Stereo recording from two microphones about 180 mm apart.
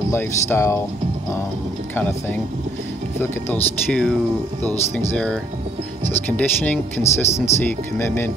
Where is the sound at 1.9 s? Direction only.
10° left (ahead or behind).